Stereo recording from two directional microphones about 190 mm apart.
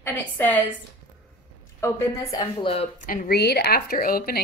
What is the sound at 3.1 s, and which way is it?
Speech, 50° left (ahead or behind).